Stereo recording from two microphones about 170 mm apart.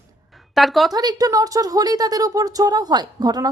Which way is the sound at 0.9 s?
20° right (ahead or behind).